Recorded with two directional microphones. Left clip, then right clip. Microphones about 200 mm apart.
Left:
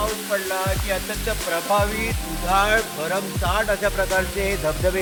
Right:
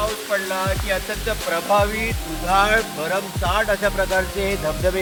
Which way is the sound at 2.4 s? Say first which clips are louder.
Right 2 dB; 10° right (ahead or behind).